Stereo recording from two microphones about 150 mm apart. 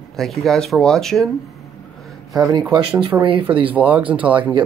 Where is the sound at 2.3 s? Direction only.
25° right (ahead or behind).